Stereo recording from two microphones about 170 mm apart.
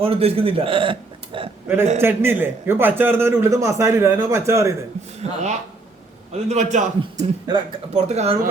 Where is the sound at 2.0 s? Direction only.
15° right (ahead or behind).